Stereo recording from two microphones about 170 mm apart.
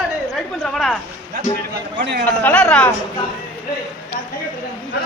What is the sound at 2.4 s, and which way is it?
Speech, 10° left (ahead or behind).